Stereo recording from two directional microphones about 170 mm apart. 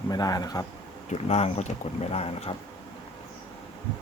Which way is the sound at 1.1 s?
40° left (ahead or behind).